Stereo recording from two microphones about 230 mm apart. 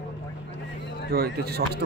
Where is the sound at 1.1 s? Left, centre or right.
Right.